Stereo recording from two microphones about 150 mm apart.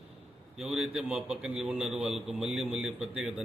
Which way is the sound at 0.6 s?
5° right (ahead or behind).